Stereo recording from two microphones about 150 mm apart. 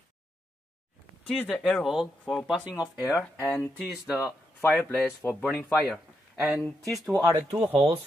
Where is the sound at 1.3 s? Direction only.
5° left (ahead or behind).